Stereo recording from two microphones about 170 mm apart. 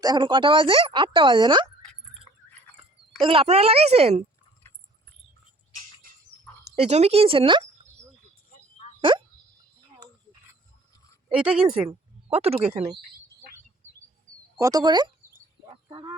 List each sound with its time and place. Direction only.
0.0 s speech: 25° right (ahead or behind)
2.3 s a sound: 25° left (ahead or behind)
3.2 s speech: 30° right (ahead or behind)
6.7 s speech: 40° right (ahead or behind)
9.0 s a sound: 30° right (ahead or behind)
11.3 s speech: 5° right (ahead or behind)
12.3 s speech: 35° right (ahead or behind)
14.6 s speech: 20° right (ahead or behind)
15.6 s bird: 30° right (ahead or behind)